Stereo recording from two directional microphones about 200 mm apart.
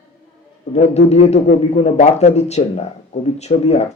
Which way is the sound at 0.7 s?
35° left (ahead or behind).